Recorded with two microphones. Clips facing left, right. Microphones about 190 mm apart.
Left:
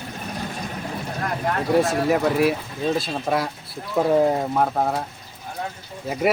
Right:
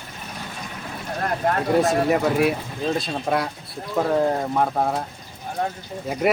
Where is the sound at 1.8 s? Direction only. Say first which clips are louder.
Even; centre (ahead or behind).